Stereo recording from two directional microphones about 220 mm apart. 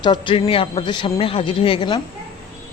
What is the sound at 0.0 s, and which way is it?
A woman's voice, 20° left (ahead or behind).